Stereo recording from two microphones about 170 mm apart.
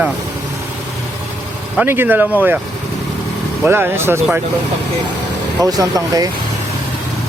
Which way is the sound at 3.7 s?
15° right (ahead or behind).